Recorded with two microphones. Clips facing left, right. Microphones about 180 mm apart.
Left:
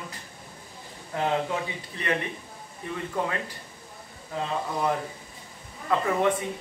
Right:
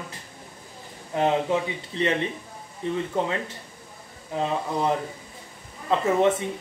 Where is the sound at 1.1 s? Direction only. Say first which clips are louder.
Right 4 dB; 20° right (ahead or behind).